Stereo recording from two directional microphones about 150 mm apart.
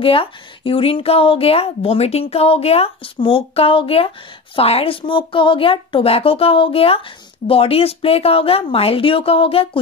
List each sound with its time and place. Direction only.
0.0 s speech: 35° left (ahead or behind)